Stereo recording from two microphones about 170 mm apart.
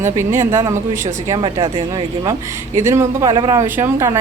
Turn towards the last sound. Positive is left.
turn(degrees=-15)  # may be behind; listen again after turning